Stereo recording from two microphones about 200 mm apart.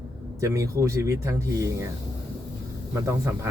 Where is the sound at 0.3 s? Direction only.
15° right (ahead or behind).